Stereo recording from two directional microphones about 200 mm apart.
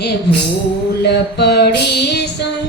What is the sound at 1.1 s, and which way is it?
Female singing, 55° left (ahead or behind).